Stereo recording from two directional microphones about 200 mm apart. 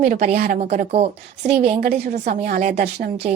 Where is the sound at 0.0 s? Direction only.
40° right (ahead or behind).